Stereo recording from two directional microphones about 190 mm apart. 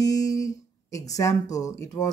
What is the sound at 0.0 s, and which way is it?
Speech, 20° left (ahead or behind).